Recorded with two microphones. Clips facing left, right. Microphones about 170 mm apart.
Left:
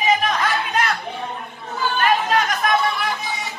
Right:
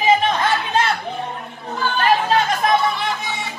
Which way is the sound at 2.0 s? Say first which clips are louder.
Right 2 dB; 30° right (ahead or behind).